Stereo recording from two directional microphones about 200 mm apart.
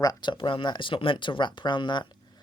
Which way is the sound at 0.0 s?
20° left (ahead or behind).